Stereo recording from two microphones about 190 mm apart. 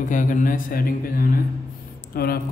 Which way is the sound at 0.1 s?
45° left (ahead or behind).